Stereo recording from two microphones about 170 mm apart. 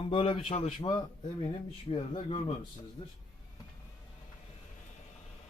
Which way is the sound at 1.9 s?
35° left (ahead or behind).